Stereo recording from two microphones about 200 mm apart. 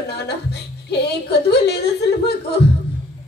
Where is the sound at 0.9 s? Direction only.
55° left (ahead or behind).